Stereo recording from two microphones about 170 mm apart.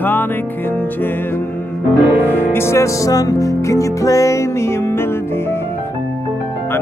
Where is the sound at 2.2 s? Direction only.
15° left (ahead or behind).